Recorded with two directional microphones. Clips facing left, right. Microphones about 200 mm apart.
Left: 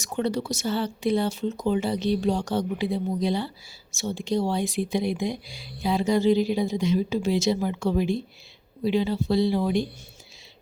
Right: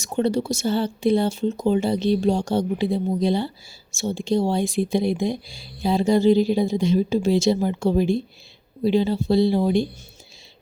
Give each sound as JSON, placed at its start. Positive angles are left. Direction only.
{"t": 0.0, "sound": "speech", "side_deg": -25}